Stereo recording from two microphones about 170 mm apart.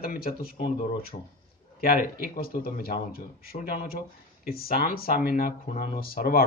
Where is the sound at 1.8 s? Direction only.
60° left (ahead or behind).